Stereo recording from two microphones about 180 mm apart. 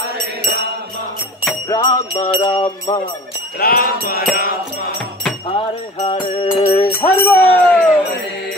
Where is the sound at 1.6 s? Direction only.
25° left (ahead or behind).